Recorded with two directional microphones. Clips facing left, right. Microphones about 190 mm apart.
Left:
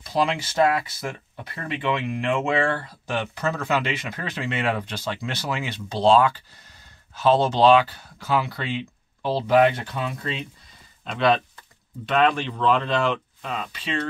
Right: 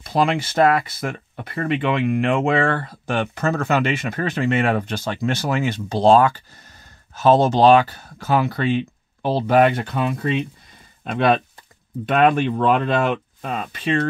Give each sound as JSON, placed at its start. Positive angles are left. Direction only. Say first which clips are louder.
{"t": 0.0, "sound": "speech", "louder": "right 4 dB", "side_deg": -55}